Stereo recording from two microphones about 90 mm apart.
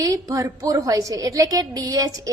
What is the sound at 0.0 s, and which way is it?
A woman's voice, 40° right (ahead or behind).